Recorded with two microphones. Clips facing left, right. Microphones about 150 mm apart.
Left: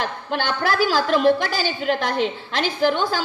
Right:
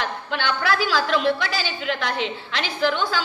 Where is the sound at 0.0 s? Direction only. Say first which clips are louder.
Left 1 dB; 45° left (ahead or behind).